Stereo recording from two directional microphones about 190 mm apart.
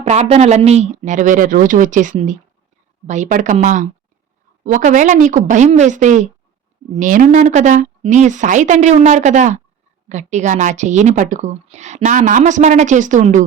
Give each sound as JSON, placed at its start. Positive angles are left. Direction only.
{"t": 0.0, "sound": "speech", "side_deg": -35}